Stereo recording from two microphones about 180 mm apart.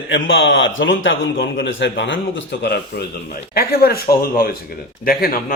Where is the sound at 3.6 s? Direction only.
55° left (ahead or behind).